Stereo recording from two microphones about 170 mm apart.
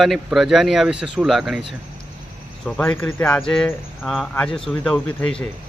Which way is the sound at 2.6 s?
10° left (ahead or behind).